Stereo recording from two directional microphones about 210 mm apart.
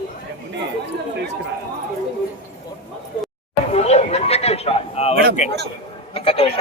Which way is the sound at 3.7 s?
30° left (ahead or behind).